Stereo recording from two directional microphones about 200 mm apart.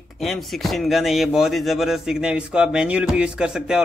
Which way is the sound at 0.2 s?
Centre (ahead or behind).